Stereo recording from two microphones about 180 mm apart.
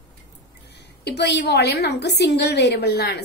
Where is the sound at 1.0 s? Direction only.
70° left (ahead or behind).